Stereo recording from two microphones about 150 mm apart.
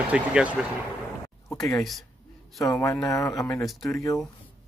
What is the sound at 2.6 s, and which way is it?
Speech, 20° left (ahead or behind).